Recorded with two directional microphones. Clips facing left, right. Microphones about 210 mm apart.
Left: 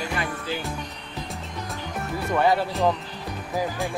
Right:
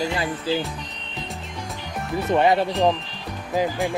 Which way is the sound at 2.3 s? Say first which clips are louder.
Right 3 dB; 20° right (ahead or behind).